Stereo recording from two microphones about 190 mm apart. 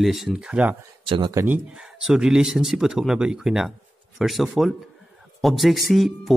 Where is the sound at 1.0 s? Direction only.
25° right (ahead or behind).